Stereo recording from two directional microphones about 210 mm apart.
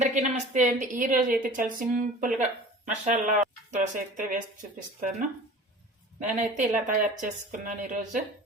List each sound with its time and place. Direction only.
0.0 s a woman's voice: 35° right (ahead or behind)
6.3 s a woman's voice: 35° right (ahead or behind)